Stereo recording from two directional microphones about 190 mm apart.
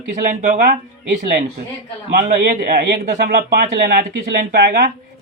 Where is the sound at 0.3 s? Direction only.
45° right (ahead or behind).